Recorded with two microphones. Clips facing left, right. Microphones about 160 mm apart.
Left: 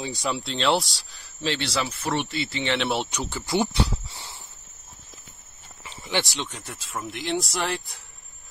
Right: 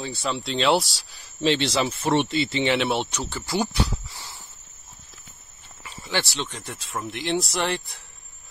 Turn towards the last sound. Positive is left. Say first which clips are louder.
# right 2 dB
turn(degrees=0)  # may be behind; listen again after turning